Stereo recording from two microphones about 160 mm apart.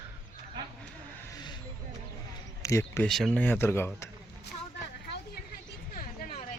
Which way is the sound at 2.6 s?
15° left (ahead or behind).